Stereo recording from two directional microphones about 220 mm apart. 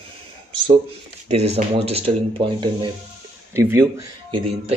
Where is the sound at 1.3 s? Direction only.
25° right (ahead or behind).